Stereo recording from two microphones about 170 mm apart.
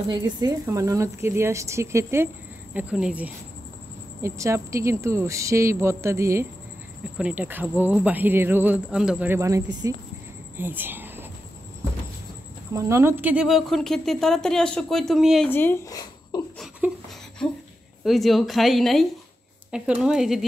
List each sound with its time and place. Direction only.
0.1 s speech: 25° right (ahead or behind)
10.6 s a sound: 10° right (ahead or behind)
12.7 s speech: 15° right (ahead or behind); by 15.5 s centre (ahead or behind)
15.5 s speech: 15° left (ahead or behind)
16.8 s a sound: 5° right (ahead or behind)
17.4 s speech: 5° left (ahead or behind)